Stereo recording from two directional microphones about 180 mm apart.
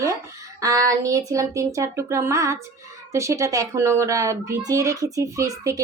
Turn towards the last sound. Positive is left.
turn(degrees=-15)  # may be behind; listen again after turning